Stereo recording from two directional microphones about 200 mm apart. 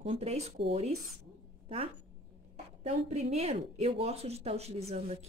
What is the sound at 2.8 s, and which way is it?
Speech, 30° right (ahead or behind).